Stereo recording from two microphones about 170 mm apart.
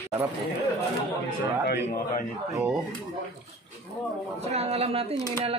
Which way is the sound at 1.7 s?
75° left (ahead or behind).